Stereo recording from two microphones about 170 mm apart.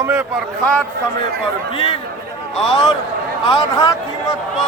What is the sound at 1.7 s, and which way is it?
Speech, 35° left (ahead or behind).